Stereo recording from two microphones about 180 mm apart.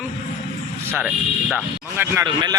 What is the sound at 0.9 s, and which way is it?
Speech, 5° right (ahead or behind).